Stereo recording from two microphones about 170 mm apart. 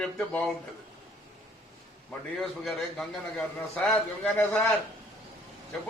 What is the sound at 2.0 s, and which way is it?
A man's voice, centre (ahead or behind).